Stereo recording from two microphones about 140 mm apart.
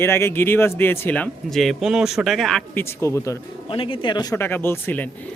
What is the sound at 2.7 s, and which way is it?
Speech, 15° left (ahead or behind).